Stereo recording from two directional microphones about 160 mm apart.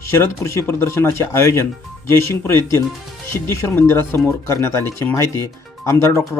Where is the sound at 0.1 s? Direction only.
15° left (ahead or behind).